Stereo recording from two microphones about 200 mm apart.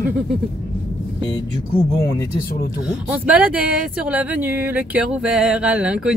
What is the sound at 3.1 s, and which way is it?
A woman's voice, 5° right (ahead or behind).